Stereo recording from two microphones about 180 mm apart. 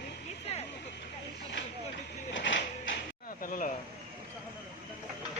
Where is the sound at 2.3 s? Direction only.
85° left.